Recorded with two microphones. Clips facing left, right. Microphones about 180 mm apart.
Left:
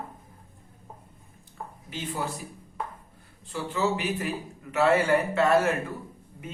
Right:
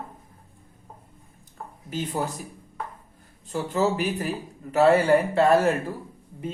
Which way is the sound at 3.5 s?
40° right (ahead or behind).